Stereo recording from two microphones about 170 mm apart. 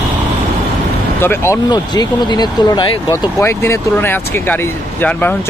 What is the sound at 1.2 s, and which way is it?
Speech, 15° left (ahead or behind).